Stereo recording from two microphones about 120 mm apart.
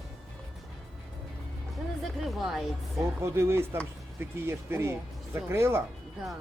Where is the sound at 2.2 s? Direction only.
Centre (ahead or behind).